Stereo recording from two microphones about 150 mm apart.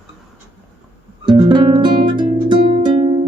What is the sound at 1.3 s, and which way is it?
Music, 30° right (ahead or behind).